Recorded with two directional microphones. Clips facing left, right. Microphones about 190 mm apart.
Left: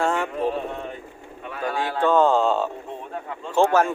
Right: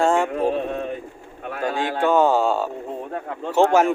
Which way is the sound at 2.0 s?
10° right (ahead or behind).